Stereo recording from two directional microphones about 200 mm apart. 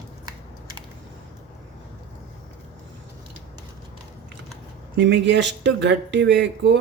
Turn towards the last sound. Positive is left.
turn(degrees=-60)  # may be behind; listen again after turning